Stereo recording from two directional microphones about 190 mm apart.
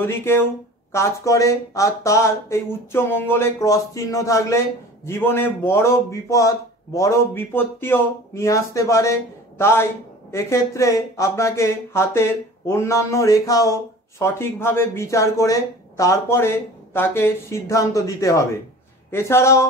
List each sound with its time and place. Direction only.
0.0 s speech: 10° left (ahead or behind)